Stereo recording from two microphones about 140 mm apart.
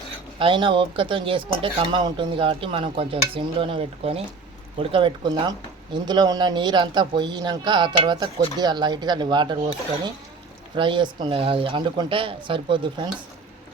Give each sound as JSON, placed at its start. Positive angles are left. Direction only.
{"t": 0.3, "sound": "speech", "side_deg": -40}
{"t": 10.8, "sound": "speech", "side_deg": -35}